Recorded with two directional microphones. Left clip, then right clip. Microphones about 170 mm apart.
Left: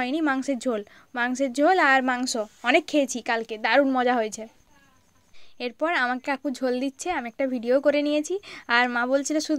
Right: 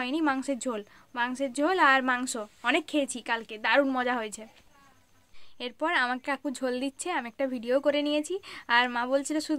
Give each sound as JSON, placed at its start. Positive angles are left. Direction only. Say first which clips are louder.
{"t": 0.0, "sound": "a woman's voice", "louder": "left 3 dB", "side_deg": 20}
{"t": 5.6, "sound": "a woman's voice", "louder": "left 3 dB", "side_deg": 20}